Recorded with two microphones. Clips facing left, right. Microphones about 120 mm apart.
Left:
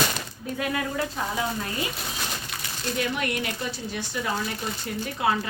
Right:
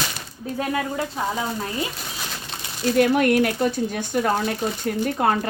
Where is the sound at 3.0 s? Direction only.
50° right (ahead or behind).